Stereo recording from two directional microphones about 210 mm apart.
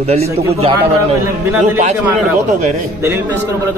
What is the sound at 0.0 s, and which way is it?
Speech, 30° right (ahead or behind).